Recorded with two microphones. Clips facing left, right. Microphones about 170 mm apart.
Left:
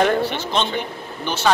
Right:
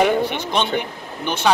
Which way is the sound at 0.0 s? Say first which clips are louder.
Right 1 dB; 10° right (ahead or behind).